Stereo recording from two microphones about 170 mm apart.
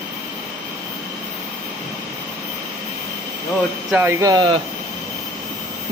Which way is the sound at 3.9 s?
15° right (ahead or behind).